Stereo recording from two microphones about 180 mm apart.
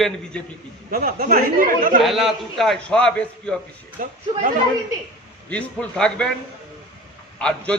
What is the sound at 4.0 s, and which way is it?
Speech, 45° right (ahead or behind).